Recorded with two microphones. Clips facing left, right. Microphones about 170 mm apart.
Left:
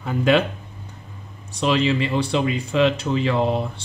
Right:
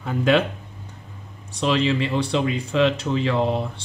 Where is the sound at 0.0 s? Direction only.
5° left (ahead or behind).